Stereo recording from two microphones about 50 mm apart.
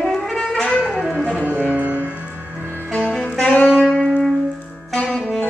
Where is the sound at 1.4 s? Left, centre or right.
Right.